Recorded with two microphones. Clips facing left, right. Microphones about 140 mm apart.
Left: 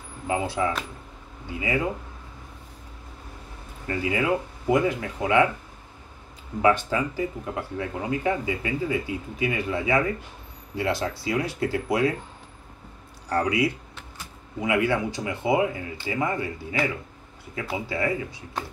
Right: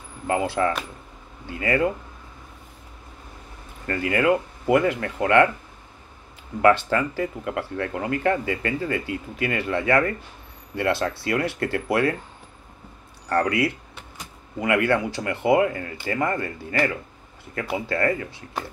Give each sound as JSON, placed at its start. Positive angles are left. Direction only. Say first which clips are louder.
{"t": 0.3, "sound": "speech", "louder": "right 3 dB", "side_deg": -65}
{"t": 3.8, "sound": "speech", "louder": "right 4 dB", "side_deg": -65}
{"t": 6.9, "sound": "speech", "louder": "right 2 dB", "side_deg": -70}
{"t": 13.3, "sound": "speech", "louder": "right 2 dB", "side_deg": -60}
{"t": 16.3, "sound": "speech", "louder": "right 2 dB", "side_deg": 5}
{"t": 17.6, "sound": "speech", "louder": "right 3 dB", "side_deg": -60}